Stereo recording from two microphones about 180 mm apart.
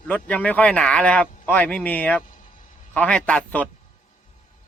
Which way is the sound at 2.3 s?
50° left (ahead or behind).